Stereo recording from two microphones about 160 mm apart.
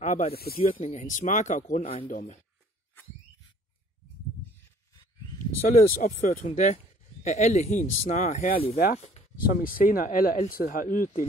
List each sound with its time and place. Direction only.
0.0 s snake: 50° left (ahead or behind)
0.3 s speech: 75° left (ahead or behind)
0.7 s speech: 40° left (ahead or behind)
1.0 s speech: 50° left (ahead or behind)
5.7 s speech: 60° left (ahead or behind)